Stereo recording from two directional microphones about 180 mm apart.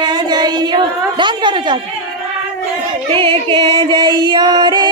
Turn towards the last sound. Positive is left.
turn(degrees=-25)  # may be behind; listen again after turning